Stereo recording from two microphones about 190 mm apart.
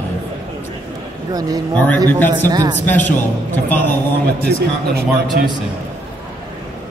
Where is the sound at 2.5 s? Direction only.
20° right (ahead or behind).